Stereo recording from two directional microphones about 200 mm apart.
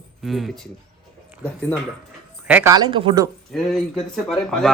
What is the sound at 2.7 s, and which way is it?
Speech, 20° right (ahead or behind).